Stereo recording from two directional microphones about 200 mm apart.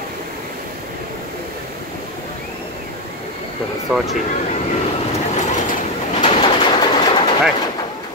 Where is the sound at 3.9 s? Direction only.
10° right (ahead or behind).